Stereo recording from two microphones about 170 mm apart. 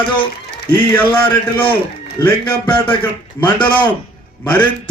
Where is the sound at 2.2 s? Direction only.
20° left (ahead or behind).